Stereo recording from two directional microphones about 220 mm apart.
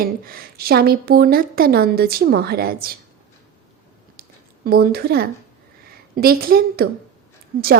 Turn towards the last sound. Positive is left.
turn(degrees=-40)  # may be behind; listen again after turning